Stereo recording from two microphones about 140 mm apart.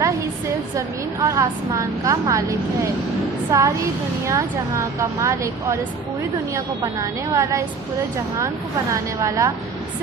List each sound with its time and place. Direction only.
0.8 s a woman's voice: 20° right (ahead or behind)
8.9 s a woman's voice: 20° right (ahead or behind)